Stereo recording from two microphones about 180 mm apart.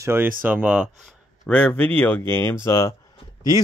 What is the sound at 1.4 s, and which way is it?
Speech, 5° left (ahead or behind).